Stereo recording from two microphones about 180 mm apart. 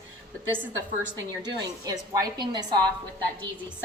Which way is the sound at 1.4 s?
20° right (ahead or behind).